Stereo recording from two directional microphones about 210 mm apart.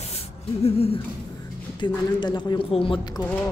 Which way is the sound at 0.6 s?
30° left (ahead or behind).